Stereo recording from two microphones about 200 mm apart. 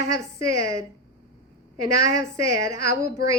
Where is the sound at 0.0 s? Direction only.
15° right (ahead or behind).